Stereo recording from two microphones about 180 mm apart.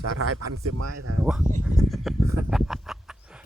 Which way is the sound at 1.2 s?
5° right (ahead or behind).